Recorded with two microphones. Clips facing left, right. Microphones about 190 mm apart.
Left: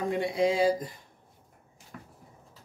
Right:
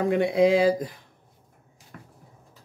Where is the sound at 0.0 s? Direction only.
90° right.